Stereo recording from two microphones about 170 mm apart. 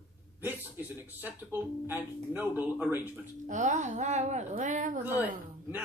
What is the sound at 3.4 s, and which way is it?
A woman's voice, 45° right (ahead or behind).